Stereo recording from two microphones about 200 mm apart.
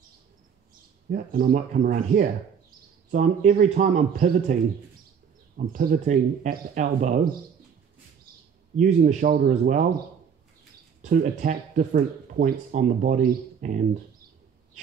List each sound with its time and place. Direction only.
1.1 s speech: 45° right (ahead or behind)
5.7 s speech: 45° right (ahead or behind)
8.7 s speech: 35° right (ahead or behind)
11.0 s speech: 40° right (ahead or behind)